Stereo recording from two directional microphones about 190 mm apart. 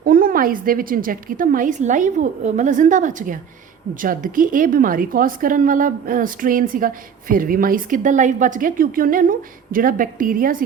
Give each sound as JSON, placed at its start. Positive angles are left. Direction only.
{"t": 0.0, "sound": "a woman's voice", "side_deg": -50}